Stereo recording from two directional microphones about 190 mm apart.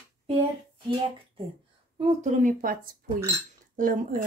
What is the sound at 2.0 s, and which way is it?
Speech, 40° right (ahead or behind).